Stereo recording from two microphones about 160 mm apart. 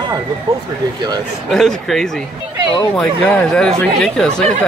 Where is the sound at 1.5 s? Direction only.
Centre (ahead or behind).